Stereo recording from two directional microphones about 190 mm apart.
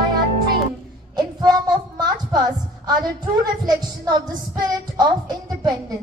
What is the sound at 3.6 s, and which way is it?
Music, 20° right (ahead or behind).